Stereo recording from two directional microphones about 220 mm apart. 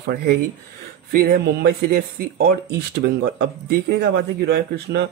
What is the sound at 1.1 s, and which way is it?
Speech, 45° right (ahead or behind).